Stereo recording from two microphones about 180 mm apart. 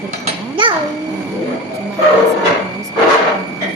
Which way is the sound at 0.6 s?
30° right (ahead or behind).